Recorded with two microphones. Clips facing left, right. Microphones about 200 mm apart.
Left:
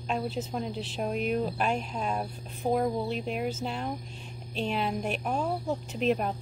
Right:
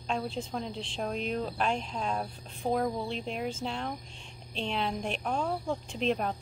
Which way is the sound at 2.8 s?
5° left (ahead or behind).